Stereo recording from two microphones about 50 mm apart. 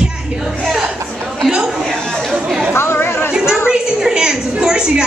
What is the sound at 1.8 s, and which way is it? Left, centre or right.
Chatter, centre.